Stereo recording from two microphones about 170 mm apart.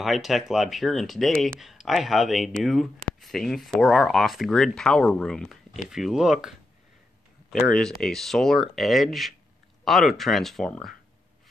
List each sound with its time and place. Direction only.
0.0 s speech: centre (ahead or behind)
7.5 s speech: 5° left (ahead or behind)